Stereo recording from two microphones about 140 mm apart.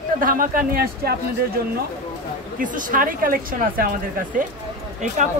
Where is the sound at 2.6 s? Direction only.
75° right (ahead or behind); by 3.9 s 90° right.